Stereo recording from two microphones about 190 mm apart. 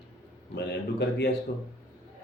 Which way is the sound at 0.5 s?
60° left (ahead or behind).